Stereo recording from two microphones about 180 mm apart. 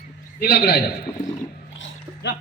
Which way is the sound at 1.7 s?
75° left (ahead or behind).